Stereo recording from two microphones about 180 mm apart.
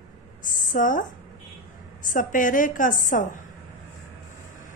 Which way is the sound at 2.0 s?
45° left (ahead or behind).